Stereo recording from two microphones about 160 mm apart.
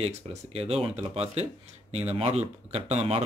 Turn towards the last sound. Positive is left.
turn(degrees=-40)  # may be behind; listen again after turning